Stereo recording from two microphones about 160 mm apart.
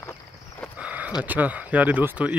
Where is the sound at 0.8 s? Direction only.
10° right (ahead or behind).